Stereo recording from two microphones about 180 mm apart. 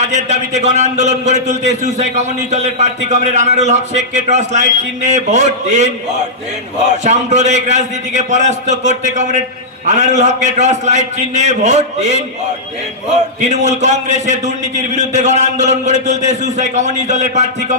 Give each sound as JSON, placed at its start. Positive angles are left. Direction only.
{"t": 0.0, "sound": "a man's voice", "side_deg": -40}